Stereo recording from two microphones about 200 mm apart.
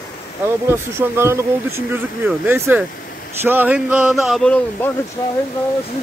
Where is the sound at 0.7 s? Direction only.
10° right (ahead or behind); by 4.9 s 5° left (ahead or behind).